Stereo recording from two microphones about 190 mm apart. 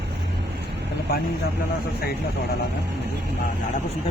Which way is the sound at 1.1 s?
55° left (ahead or behind).